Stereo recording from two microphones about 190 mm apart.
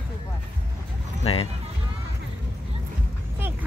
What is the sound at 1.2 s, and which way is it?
Speech, 30° left (ahead or behind).